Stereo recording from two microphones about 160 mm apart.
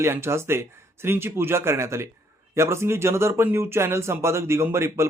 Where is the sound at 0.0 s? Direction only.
15° right (ahead or behind).